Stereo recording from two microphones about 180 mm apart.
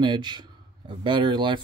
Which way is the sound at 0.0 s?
25° right (ahead or behind).